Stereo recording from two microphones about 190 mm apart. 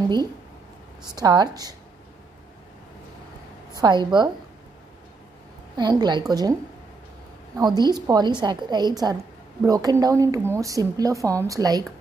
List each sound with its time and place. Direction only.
1.1 s a woman's voice: 20° right (ahead or behind)
3.7 s a woman's voice: 20° right (ahead or behind)
5.8 s a woman's voice: 20° right (ahead or behind)
7.5 s a woman's voice: 20° right (ahead or behind)